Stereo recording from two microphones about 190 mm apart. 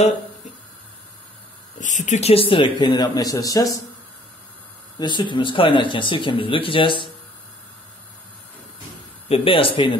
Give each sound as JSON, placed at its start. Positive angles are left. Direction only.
{"t": 1.8, "sound": "speech", "side_deg": 40}
{"t": 4.9, "sound": "speech", "side_deg": 25}
{"t": 9.3, "sound": "speech", "side_deg": 30}